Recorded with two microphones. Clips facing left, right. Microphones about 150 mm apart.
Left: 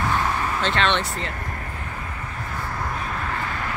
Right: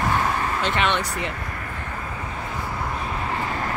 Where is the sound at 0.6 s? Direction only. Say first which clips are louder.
Left 2 dB; 15° right (ahead or behind).